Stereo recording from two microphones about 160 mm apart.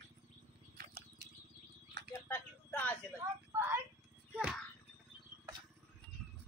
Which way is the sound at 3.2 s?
15° right (ahead or behind).